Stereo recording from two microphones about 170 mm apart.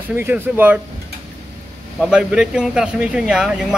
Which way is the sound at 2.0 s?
5° right (ahead or behind).